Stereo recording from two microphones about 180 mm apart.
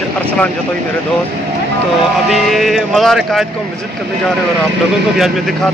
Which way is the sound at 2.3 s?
Centre (ahead or behind).